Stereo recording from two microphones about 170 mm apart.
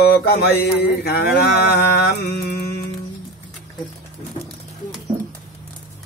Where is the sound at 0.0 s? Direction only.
70° left (ahead or behind).